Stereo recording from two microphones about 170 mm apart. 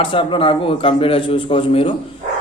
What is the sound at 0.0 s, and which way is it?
A man's voice, 30° left (ahead or behind).